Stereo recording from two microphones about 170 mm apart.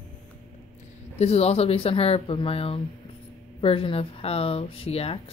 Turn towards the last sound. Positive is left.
turn(degrees=35)  # may be behind; listen again after turning